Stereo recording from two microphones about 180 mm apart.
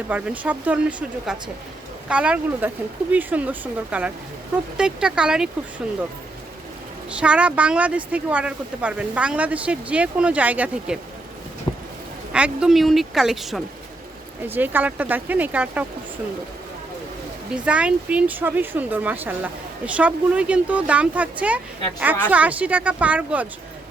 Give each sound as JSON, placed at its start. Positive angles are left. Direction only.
{"t": 0.1, "sound": "speech", "side_deg": -10}
{"t": 7.1, "sound": "speech", "side_deg": -5}
{"t": 11.7, "sound": "a sound", "side_deg": 25}
{"t": 12.3, "sound": "speech", "side_deg": -5}
{"t": 17.5, "sound": "speech", "side_deg": -5}